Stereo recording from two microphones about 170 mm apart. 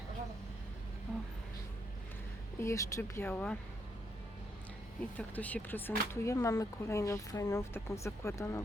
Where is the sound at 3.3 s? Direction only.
5° left (ahead or behind).